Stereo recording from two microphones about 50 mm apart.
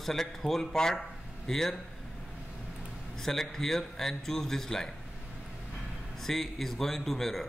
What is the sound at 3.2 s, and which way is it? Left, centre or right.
A man's voice, centre.